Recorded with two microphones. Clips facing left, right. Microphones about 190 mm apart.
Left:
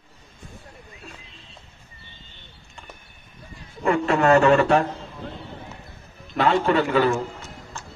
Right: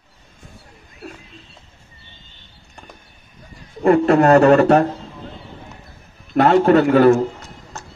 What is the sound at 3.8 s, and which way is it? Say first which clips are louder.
A man's voice: right 7 dB; 40° right (ahead or behind).